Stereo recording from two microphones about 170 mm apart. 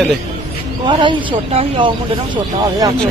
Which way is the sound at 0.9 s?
30° right (ahead or behind).